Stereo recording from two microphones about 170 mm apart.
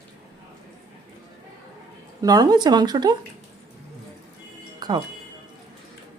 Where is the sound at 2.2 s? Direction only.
20° right (ahead or behind).